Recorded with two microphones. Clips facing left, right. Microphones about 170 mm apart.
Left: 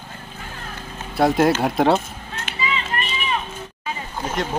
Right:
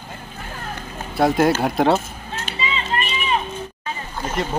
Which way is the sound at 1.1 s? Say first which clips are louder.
Even; centre (ahead or behind).